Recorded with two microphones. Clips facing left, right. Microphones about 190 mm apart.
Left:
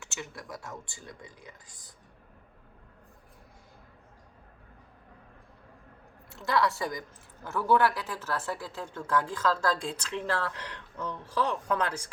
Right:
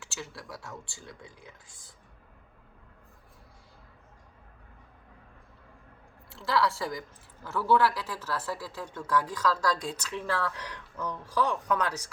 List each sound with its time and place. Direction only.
0.0 s speech: 20° left (ahead or behind)
6.3 s speech: 20° left (ahead or behind)